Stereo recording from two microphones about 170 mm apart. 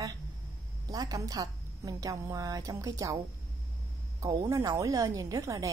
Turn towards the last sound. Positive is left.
turn(degrees=-20)  # may be behind; listen again after turning